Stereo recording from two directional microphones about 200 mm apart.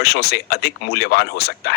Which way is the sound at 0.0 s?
50° left (ahead or behind).